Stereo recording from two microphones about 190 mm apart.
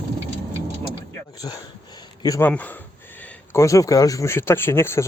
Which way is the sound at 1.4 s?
20° left (ahead or behind).